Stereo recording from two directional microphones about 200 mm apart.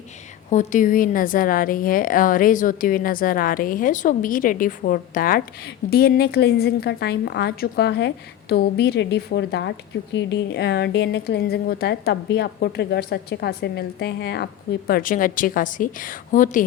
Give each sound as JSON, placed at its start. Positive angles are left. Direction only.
{"t": 0.5, "sound": "a woman's voice", "side_deg": 40}